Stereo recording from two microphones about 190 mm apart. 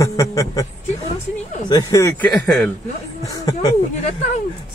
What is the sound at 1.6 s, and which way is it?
Speech, 20° left (ahead or behind).